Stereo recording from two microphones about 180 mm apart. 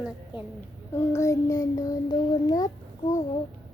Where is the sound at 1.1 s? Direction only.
15° left (ahead or behind).